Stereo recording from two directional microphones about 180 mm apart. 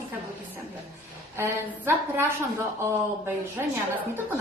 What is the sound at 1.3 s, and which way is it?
Speech, 10° right (ahead or behind).